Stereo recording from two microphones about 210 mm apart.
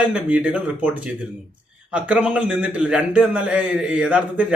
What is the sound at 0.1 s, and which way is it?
A man's voice, 5° right (ahead or behind).